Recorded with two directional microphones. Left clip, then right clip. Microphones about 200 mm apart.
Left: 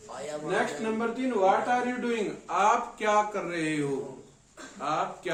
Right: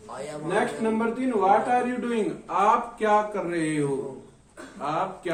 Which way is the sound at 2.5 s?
20° left (ahead or behind).